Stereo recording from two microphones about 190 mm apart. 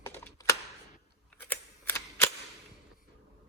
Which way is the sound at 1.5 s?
10° left (ahead or behind).